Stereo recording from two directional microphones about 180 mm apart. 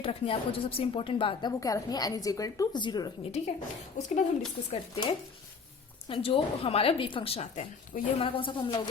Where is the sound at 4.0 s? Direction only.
45° left (ahead or behind).